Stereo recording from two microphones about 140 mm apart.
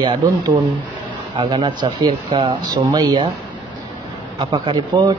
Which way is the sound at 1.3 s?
35° right (ahead or behind).